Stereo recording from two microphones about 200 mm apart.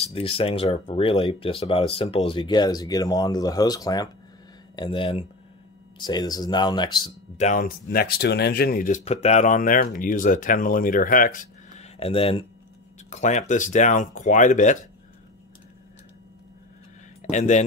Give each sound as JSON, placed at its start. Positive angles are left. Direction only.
{"t": 0.0, "sound": "speech", "side_deg": 30}
{"t": 7.3, "sound": "speech", "side_deg": 40}
{"t": 17.2, "sound": "speech", "side_deg": 35}